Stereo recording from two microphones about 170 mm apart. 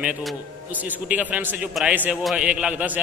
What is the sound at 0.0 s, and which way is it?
A man's voice, 5° right (ahead or behind).